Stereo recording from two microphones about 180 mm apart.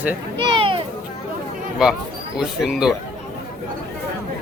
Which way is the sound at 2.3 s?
5° right (ahead or behind).